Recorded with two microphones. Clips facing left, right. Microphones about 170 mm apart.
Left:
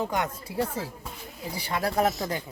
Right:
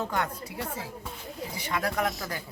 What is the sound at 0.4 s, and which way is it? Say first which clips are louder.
Speech: left 6 dB; 35° left (ahead or behind).